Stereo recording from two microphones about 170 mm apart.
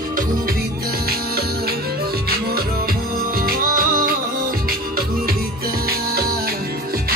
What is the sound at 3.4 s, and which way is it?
Music, 60° right (ahead or behind).